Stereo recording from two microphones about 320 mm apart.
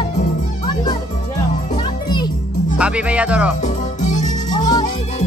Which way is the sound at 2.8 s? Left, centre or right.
Centre.